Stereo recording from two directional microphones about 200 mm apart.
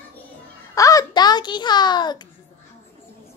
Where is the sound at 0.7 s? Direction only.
15° left (ahead or behind).